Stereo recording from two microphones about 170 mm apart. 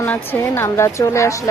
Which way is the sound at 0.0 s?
10° left (ahead or behind).